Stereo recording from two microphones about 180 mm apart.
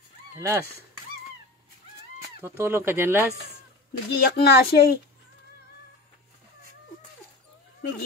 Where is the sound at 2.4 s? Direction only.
15° right (ahead or behind).